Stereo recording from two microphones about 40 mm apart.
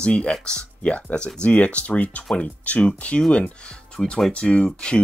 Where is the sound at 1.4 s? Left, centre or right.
Left.